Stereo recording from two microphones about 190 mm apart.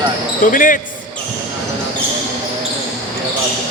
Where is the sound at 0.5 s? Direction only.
45° left (ahead or behind).